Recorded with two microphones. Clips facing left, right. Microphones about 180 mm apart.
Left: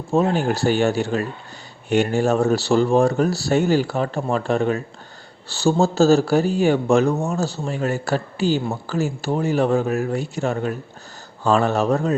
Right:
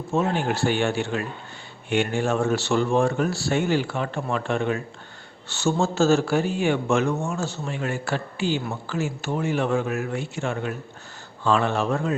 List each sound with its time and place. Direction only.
0.1 s a man's voice: 40° left (ahead or behind)